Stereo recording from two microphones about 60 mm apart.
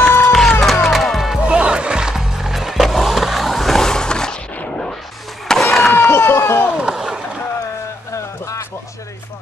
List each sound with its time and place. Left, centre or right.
0.0 s run: left
0.3 s run: centre
0.8 s music: centre
1.5 s music: centre
4.6 s artillery fire: centre
5.5 s a sound: centre
5.9 s run: left
6.8 s a sound: centre